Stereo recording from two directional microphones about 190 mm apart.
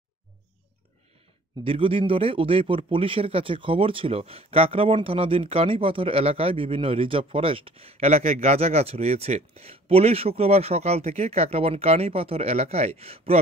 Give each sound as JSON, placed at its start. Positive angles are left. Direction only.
{"t": 1.6, "sound": "speech", "side_deg": -30}